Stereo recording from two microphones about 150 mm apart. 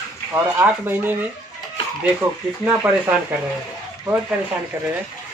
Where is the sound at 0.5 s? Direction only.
15° right (ahead or behind).